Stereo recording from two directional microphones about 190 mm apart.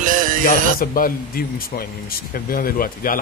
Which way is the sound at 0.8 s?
50° left (ahead or behind).